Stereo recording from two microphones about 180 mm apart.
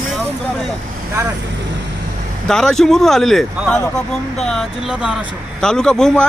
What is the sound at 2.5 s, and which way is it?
A man's voice, 5° left (ahead or behind).